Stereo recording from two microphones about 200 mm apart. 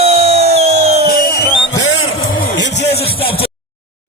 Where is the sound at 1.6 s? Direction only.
70° left (ahead or behind).